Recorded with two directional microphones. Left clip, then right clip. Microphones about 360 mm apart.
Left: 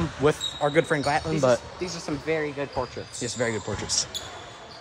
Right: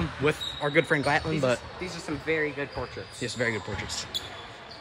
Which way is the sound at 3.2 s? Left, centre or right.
Centre.